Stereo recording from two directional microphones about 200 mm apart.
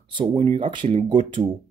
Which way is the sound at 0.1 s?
25° right (ahead or behind).